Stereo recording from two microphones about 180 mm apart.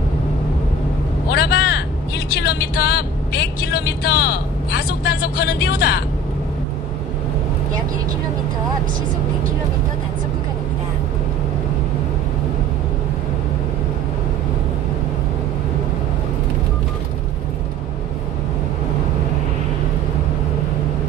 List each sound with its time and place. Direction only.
1.3 s vehicle: 65° left (ahead or behind)
2.4 s speech: 60° left (ahead or behind)